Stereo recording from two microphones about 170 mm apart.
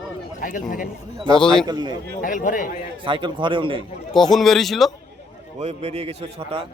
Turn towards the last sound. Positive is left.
turn(degrees=-35)  # may be behind; listen again after turning